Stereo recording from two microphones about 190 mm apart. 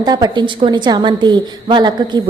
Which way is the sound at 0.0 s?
20° right (ahead or behind).